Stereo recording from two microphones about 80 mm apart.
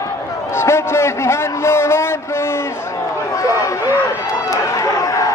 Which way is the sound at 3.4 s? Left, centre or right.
Left.